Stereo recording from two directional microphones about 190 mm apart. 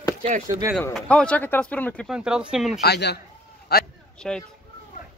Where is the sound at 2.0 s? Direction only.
5° right (ahead or behind).